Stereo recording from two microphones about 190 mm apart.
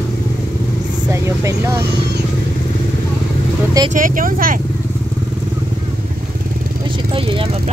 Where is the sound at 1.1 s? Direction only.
15° right (ahead or behind).